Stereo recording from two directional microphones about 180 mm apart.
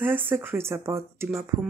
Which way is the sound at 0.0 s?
10° right (ahead or behind).